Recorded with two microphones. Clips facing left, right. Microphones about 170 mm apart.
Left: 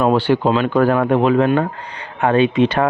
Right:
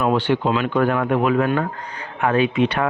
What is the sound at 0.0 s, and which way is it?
Speech, 35° left (ahead or behind).